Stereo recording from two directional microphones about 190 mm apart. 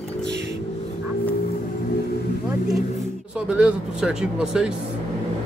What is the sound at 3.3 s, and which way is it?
Speech, 5° right (ahead or behind).